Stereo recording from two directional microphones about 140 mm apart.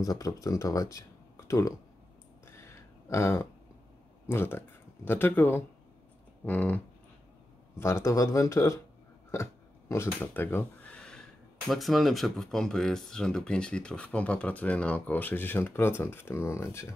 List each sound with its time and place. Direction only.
0.0 s speech: 25° left (ahead or behind)
2.4 s a sound: 20° left (ahead or behind)
4.3 s speech: 15° left (ahead or behind)
7.8 s speech: 20° left (ahead or behind)